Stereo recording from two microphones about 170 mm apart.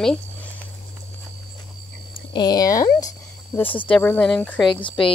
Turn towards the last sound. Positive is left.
turn(degrees=30)  # may be behind; listen again after turning